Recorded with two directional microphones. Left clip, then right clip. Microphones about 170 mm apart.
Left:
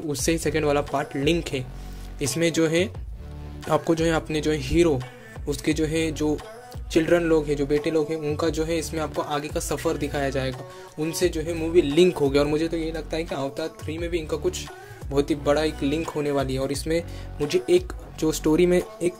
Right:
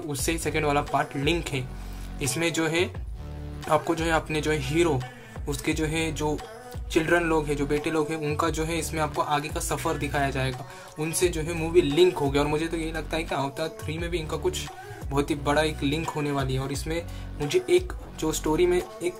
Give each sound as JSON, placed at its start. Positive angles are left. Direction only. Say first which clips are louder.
{"t": 0.1, "sound": "speech", "louder": "left 4 dB", "side_deg": 35}
{"t": 8.4, "sound": "speech", "louder": "left 2 dB", "side_deg": 30}
{"t": 13.6, "sound": "speech", "louder": "left 1 dB", "side_deg": 45}